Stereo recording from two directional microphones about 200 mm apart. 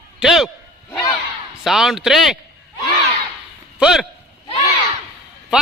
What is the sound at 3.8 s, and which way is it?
Speech, 5° right (ahead or behind).